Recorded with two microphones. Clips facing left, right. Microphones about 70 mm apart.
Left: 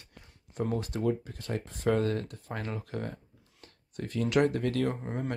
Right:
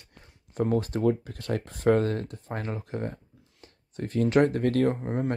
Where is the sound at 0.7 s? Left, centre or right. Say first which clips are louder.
Right 5 dB; right.